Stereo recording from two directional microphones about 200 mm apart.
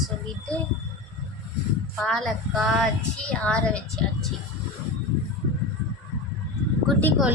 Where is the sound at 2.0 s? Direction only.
Centre (ahead or behind).